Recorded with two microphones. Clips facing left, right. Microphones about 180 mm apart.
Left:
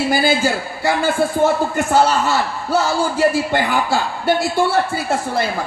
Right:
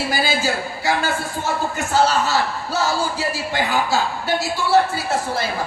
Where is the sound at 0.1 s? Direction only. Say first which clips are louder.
Left 4 dB; 55° left (ahead or behind).